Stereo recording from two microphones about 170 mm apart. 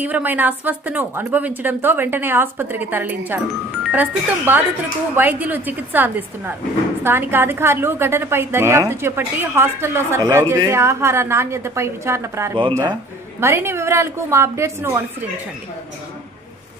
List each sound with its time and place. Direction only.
0.0 s a woman's voice: 10° right (ahead or behind)
12.5 s speech: 30° right (ahead or behind)
13.4 s a woman's voice: 15° right (ahead or behind)